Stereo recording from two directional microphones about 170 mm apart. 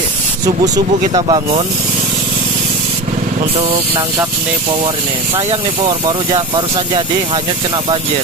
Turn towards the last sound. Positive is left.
turn(degrees=-25)  # may be behind; listen again after turning